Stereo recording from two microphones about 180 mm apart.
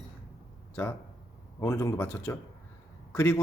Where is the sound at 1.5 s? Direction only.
15° left (ahead or behind).